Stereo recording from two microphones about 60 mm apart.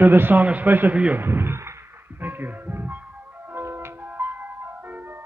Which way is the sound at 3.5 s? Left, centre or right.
Right.